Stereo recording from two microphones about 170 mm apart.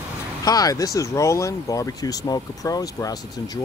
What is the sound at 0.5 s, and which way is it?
Speech, 20° left (ahead or behind).